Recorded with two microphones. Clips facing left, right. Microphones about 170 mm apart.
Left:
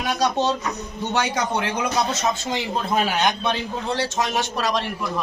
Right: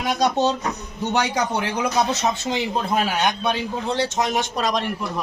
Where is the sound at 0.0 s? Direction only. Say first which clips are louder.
Right 2 dB; 20° right (ahead or behind).